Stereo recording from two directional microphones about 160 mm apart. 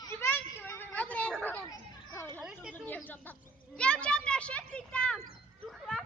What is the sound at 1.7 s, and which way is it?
Children playing, 20° left (ahead or behind).